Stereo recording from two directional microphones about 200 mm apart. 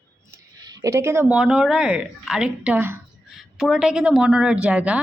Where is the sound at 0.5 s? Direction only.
20° right (ahead or behind).